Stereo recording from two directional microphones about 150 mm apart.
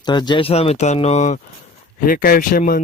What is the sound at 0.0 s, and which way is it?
Speech, 30° left (ahead or behind).